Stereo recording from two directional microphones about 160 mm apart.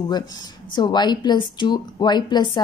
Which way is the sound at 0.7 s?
25° left (ahead or behind).